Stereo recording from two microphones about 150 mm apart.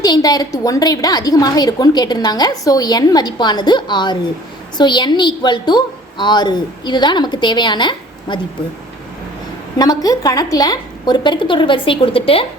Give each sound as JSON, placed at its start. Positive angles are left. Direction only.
{"t": 0.0, "sound": "a woman's voice", "side_deg": 25}
{"t": 9.7, "sound": "a woman's voice", "side_deg": 25}